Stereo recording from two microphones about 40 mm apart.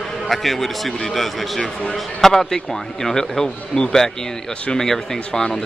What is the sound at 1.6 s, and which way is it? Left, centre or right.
Speech, left.